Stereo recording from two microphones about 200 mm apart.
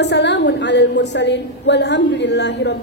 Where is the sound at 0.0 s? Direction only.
60° left (ahead or behind).